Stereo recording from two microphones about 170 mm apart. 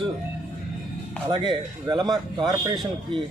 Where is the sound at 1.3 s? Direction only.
25° right (ahead or behind).